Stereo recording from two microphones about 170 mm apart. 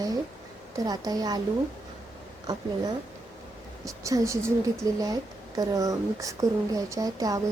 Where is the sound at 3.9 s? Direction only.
20° right (ahead or behind).